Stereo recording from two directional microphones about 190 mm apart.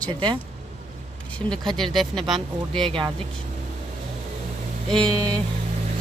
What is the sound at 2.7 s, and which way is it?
Speech, 25° right (ahead or behind).